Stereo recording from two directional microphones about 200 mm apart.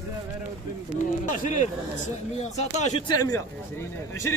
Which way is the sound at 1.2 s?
40° left (ahead or behind).